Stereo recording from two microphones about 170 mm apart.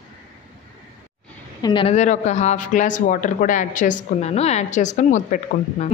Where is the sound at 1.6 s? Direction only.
30° left (ahead or behind).